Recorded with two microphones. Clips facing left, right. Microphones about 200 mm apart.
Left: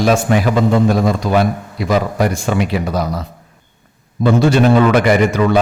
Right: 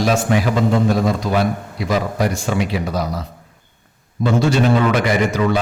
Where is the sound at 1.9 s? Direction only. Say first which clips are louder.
Left 3 dB; 55° left (ahead or behind).